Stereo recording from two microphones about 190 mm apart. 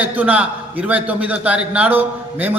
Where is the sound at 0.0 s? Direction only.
10° right (ahead or behind).